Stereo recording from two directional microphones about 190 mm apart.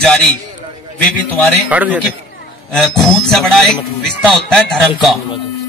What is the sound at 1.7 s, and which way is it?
Speech, 10° right (ahead or behind).